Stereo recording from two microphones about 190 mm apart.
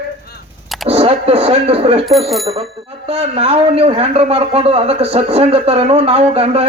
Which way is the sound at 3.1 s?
30° right (ahead or behind).